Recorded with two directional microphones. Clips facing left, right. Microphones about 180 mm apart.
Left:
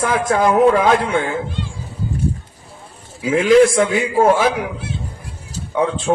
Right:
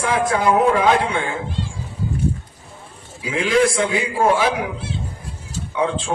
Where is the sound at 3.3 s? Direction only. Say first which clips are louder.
Left 6 dB; 45° left (ahead or behind).